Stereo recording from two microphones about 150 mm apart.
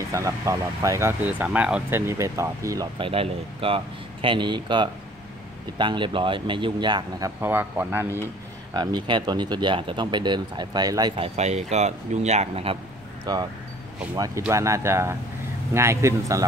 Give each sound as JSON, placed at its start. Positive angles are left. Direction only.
{"t": 0.1, "sound": "speech", "side_deg": -20}
{"t": 3.0, "sound": "speech", "side_deg": -40}
{"t": 8.7, "sound": "speech", "side_deg": -30}
{"t": 13.2, "sound": "speech", "side_deg": -25}